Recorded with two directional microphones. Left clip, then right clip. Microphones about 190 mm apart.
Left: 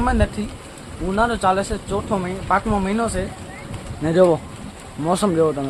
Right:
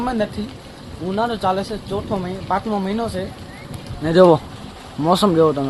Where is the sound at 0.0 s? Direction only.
Centre (ahead or behind).